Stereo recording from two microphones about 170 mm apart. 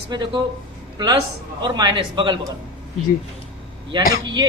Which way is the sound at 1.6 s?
25° right (ahead or behind).